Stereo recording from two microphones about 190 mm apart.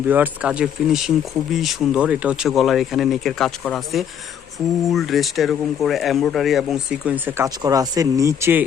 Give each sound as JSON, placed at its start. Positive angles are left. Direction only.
{"t": 0.1, "sound": "speech", "side_deg": -10}
{"t": 7.4, "sound": "speech", "side_deg": -20}